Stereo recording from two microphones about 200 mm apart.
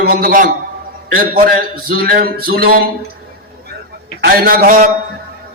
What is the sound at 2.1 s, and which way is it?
Speech, 50° right (ahead or behind).